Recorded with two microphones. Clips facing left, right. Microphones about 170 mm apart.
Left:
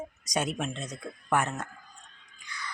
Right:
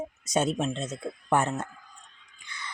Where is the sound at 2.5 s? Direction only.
25° right (ahead or behind).